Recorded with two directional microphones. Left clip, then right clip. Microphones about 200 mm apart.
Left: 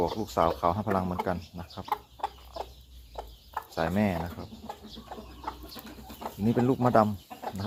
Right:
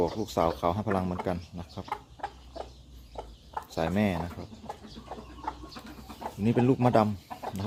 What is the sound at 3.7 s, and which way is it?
Speech, 20° right (ahead or behind).